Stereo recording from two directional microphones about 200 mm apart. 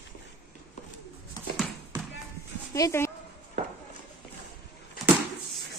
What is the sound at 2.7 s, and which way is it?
Speech, 15° left (ahead or behind).